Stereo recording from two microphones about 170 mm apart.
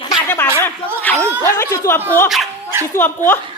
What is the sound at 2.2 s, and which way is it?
Speech, centre (ahead or behind).